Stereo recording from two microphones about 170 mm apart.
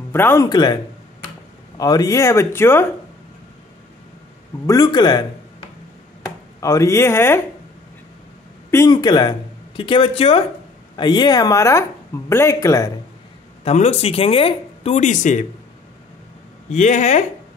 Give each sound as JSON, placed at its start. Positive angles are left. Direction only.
{"t": 0.1, "sound": "speech", "side_deg": 15}
{"t": 1.8, "sound": "speech", "side_deg": 20}
{"t": 4.6, "sound": "speech", "side_deg": 25}
{"t": 6.2, "sound": "speech", "side_deg": 20}
{"t": 8.6, "sound": "speech", "side_deg": 20}
{"t": 13.7, "sound": "speech", "side_deg": 35}
{"t": 16.7, "sound": "speech", "side_deg": 45}